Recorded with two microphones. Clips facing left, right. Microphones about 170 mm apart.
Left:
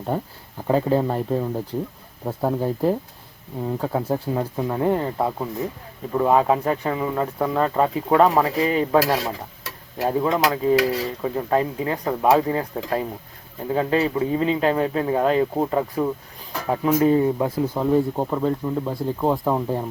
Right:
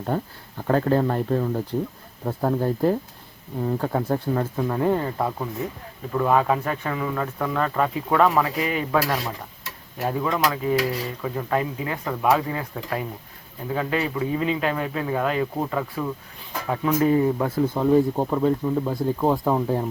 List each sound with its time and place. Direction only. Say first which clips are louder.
0.1 s speech: even; 5° left (ahead or behind)
4.5 s speech: left 2 dB; 20° left (ahead or behind)
17.7 s speech: right 1 dB; centre (ahead or behind)